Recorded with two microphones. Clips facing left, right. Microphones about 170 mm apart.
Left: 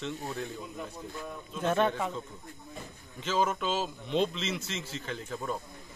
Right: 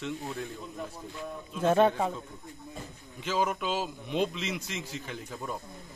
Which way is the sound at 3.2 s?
10° right (ahead or behind).